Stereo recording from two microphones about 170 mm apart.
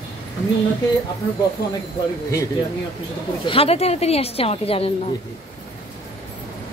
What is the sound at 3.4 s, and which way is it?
A woman's voice, 35° left (ahead or behind).